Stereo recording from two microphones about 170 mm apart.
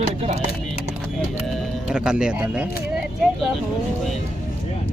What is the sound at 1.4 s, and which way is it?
Speech, 5° right (ahead or behind).